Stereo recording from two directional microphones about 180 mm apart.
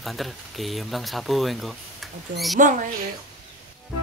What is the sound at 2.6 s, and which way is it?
Speech, 45° right (ahead or behind).